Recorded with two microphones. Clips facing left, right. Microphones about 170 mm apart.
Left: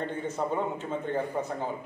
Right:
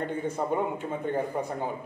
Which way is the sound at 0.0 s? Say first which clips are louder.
Right 1 dB; 10° right (ahead or behind).